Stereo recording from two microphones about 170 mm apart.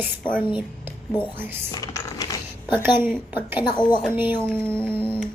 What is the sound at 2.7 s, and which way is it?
Speech, 10° right (ahead or behind).